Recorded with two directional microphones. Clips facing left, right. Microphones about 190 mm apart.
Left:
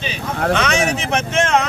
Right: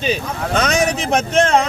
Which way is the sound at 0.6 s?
40° right (ahead or behind).